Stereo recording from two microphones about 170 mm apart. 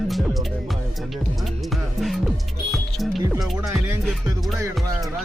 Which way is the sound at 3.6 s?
10° right (ahead or behind).